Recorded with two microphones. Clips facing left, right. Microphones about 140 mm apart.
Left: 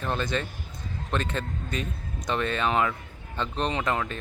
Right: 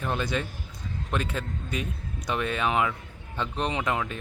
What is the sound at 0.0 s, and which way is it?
Speech, 10° right (ahead or behind).